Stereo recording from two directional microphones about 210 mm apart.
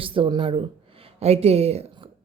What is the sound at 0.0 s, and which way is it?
Speech, 25° right (ahead or behind).